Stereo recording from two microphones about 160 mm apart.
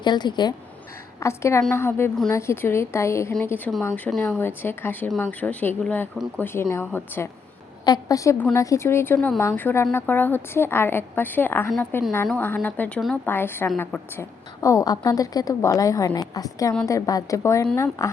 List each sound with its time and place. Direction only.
0.0 s a woman's voice: 30° left (ahead or behind)
1.2 s a woman's voice: 15° left (ahead or behind)